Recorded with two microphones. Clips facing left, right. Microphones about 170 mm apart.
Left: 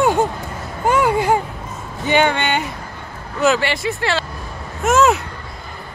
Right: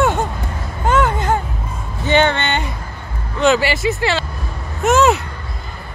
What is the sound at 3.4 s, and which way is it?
Speech, centre (ahead or behind).